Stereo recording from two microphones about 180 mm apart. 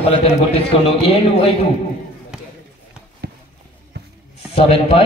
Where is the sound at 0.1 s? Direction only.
35° left (ahead or behind).